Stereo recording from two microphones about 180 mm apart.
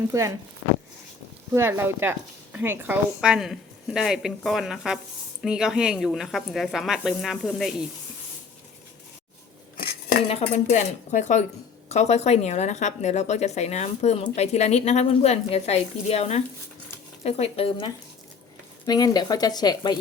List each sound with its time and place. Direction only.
0.1 s speech: 15° right (ahead or behind)
1.5 s a woman's voice: 15° right (ahead or behind)
9.7 s a sound: 60° left (ahead or behind)
10.2 s speech: 40° left (ahead or behind); by 20.0 s 25° left (ahead or behind)